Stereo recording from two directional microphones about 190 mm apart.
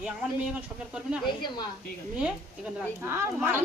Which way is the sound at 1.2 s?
25° left (ahead or behind).